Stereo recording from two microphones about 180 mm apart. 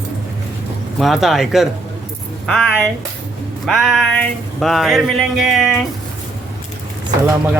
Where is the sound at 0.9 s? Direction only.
Centre (ahead or behind).